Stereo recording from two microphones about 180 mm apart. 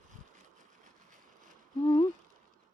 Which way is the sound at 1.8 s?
30° left (ahead or behind).